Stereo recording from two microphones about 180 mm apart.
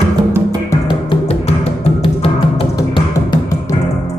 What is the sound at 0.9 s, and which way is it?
Music, 30° left (ahead or behind).